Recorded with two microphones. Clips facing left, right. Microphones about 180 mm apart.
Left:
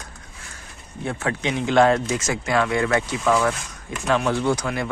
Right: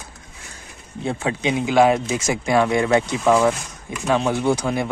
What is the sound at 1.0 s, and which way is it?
Speech, 20° right (ahead or behind).